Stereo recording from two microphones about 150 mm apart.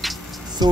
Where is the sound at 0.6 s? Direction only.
30° right (ahead or behind).